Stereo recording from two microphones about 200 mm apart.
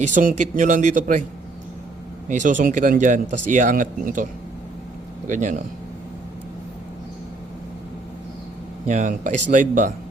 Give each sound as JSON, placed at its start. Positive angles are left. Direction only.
{"t": 0.1, "sound": "speech", "side_deg": -40}
{"t": 2.3, "sound": "speech", "side_deg": -40}
{"t": 5.3, "sound": "speech", "side_deg": -40}
{"t": 8.9, "sound": "speech", "side_deg": -40}